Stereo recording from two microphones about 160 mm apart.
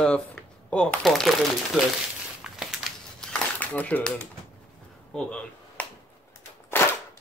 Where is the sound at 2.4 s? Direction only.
Centre (ahead or behind).